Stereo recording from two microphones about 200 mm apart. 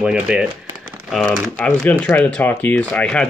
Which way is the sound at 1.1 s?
5° left (ahead or behind).